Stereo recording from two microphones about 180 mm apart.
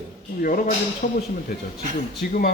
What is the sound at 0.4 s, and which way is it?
Speech, 50° left (ahead or behind).